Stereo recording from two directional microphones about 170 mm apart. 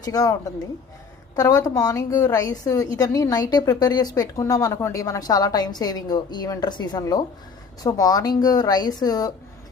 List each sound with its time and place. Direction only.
0.0 s a woman's voice: 20° left (ahead or behind)
1.4 s a woman's voice: 20° left (ahead or behind)